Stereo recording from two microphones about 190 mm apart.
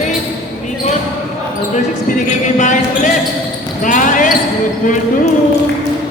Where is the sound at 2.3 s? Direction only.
40° left (ahead or behind).